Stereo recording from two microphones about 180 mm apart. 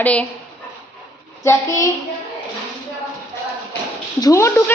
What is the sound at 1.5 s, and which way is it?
Speech, 15° left (ahead or behind).